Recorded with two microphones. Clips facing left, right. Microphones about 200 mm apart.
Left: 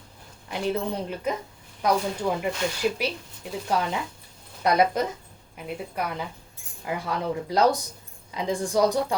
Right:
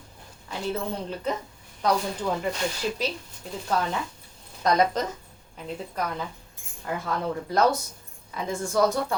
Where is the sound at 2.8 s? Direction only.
10° left (ahead or behind).